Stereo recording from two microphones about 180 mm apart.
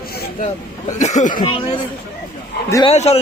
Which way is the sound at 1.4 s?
30° left (ahead or behind).